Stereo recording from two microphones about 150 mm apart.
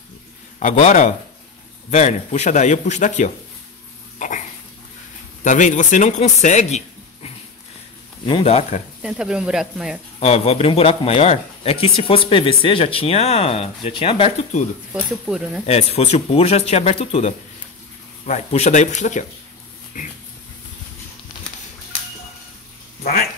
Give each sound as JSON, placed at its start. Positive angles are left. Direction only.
{"t": 0.6, "sound": "speech", "side_deg": 55}
{"t": 4.2, "sound": "dog", "side_deg": 60}
{"t": 5.4, "sound": "speech", "side_deg": 55}
{"t": 9.0, "sound": "speech", "side_deg": -5}
{"t": 10.2, "sound": "speech", "side_deg": 45}
{"t": 15.2, "sound": "speech", "side_deg": -5}
{"t": 15.6, "sound": "speech", "side_deg": 45}